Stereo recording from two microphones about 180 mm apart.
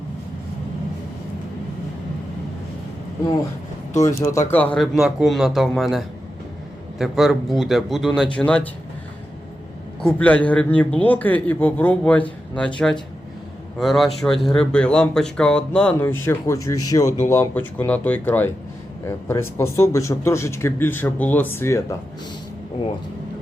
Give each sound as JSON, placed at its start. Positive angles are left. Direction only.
{"t": 3.9, "sound": "speech", "side_deg": 15}
{"t": 10.0, "sound": "speech", "side_deg": 5}